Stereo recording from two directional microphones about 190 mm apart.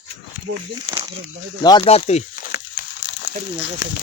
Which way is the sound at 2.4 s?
55° left (ahead or behind).